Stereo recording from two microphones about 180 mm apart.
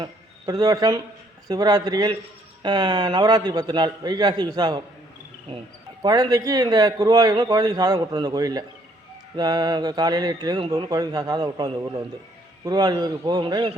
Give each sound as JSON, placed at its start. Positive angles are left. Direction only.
{"t": 0.0, "sound": "speech", "side_deg": -20}
{"t": 6.0, "sound": "speech", "side_deg": -20}